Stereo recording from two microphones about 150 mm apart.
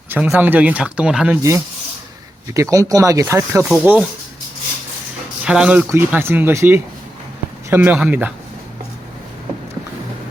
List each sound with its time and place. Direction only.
0.1 s speech: 10° right (ahead or behind)
1.4 s speech: 20° right (ahead or behind)
5.5 s speech: 5° right (ahead or behind)